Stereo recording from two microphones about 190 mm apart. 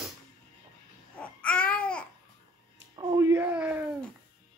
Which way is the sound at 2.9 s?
15° right (ahead or behind).